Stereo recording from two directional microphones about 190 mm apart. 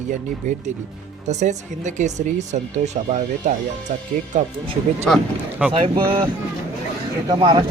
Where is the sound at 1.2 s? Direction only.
40° right (ahead or behind).